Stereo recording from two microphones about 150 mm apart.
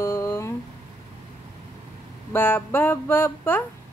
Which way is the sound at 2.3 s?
15° left (ahead or behind).